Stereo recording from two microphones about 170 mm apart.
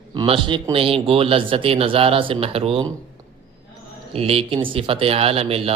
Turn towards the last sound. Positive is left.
turn(degrees=-35)  # may be behind; listen again after turning